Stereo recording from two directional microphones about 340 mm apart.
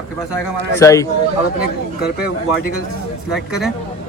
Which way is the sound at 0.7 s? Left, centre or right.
Centre.